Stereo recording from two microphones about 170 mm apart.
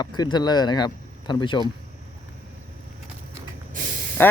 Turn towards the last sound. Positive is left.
turn(degrees=10)  # may be behind; listen again after turning